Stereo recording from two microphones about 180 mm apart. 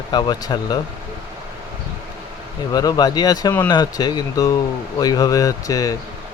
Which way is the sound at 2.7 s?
20° left (ahead or behind).